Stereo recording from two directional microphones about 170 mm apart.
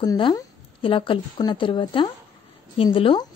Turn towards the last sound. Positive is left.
turn(degrees=30)  # may be behind; listen again after turning